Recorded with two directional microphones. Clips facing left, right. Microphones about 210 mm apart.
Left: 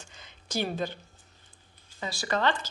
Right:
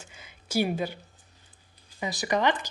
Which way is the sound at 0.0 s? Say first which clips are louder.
Right 1 dB; 10° right (ahead or behind).